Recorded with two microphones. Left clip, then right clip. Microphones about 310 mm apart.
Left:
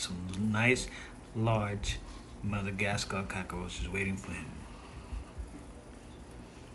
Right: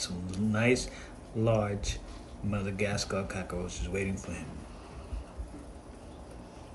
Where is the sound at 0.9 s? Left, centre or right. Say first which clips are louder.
Right 4 dB; centre.